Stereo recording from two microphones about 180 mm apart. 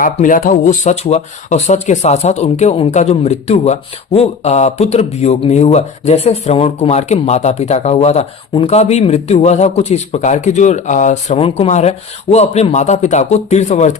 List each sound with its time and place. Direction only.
0.0 s speech: 50° left (ahead or behind)